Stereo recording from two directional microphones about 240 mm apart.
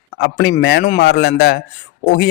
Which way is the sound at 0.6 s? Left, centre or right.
Left.